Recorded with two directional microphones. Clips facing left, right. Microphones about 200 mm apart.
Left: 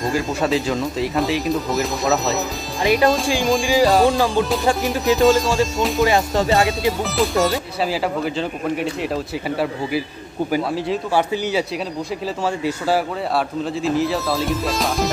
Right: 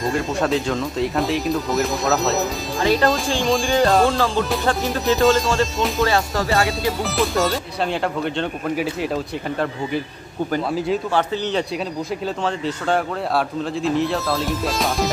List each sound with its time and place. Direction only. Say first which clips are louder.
0.0 s speech: even; centre (ahead or behind)
2.8 s speech: left 1 dB; 15° left (ahead or behind)
3.4 s speech: left 1 dB; centre (ahead or behind)
6.0 s music: left 3 dB; 20° left (ahead or behind)
7.0 s speech: even; centre (ahead or behind)